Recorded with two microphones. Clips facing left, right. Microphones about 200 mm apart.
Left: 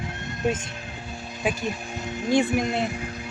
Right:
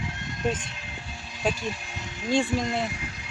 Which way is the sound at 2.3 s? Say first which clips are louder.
Left 3 dB; 20° left (ahead or behind).